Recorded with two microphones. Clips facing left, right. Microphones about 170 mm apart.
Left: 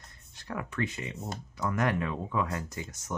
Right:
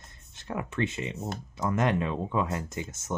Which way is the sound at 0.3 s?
25° right (ahead or behind).